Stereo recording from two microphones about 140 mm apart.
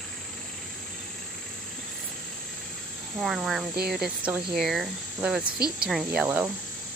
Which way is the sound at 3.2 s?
5° right (ahead or behind).